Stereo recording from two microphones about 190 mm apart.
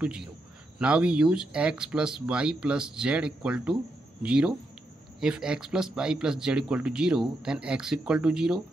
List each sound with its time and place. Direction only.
0.7 s speech: 5° right (ahead or behind)